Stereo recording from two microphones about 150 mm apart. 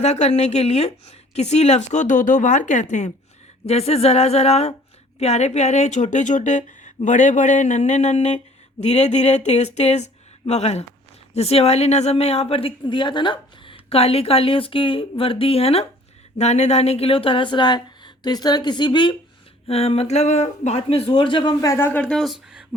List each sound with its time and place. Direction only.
0.0 s a woman's voice: 45° left (ahead or behind)
3.7 s a woman's voice: 45° left (ahead or behind)
19.6 s a woman's voice: 45° left (ahead or behind)
21.1 s speech: 30° left (ahead or behind); by 22.6 s centre (ahead or behind)